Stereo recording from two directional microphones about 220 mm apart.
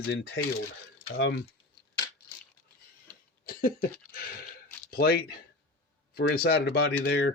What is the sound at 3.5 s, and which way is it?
Cough, 40° left (ahead or behind).